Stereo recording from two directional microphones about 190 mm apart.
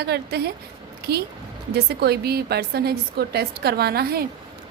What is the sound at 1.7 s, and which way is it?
A woman's voice, 60° right (ahead or behind).